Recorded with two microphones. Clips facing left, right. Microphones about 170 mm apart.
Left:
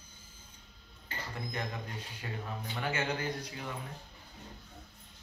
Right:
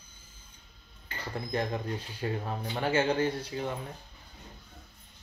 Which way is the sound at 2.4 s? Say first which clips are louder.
Right 6 dB; 45° right (ahead or behind).